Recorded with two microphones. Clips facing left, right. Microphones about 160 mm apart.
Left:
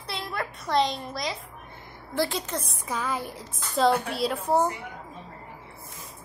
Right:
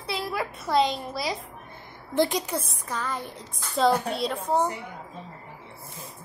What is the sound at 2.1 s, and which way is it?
Speech, 20° right (ahead or behind).